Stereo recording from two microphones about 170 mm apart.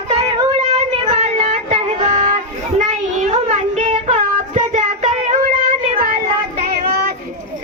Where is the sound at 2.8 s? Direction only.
45° right (ahead or behind).